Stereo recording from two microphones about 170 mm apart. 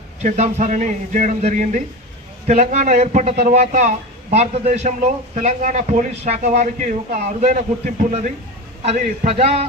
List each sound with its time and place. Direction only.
0.2 s a man's voice: 45° right (ahead or behind)